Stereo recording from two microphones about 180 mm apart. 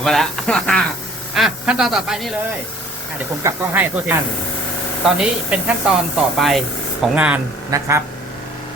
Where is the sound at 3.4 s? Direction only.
15° right (ahead or behind).